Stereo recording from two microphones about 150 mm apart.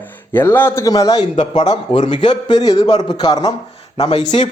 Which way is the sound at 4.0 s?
45° left (ahead or behind).